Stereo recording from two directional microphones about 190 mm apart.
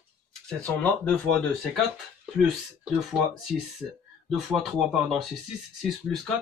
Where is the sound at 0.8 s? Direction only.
5° left (ahead or behind).